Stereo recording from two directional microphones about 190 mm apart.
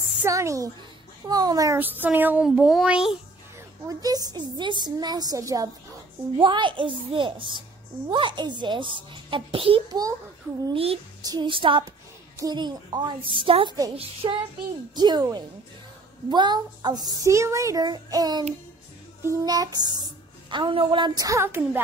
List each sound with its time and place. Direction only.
0.2 s a woman's voice: 15° right (ahead or behind)
3.8 s a child's voice: 20° right (ahead or behind)